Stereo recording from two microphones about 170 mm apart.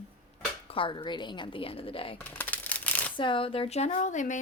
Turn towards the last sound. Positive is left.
turn(degrees=45)  # may be behind; listen again after turning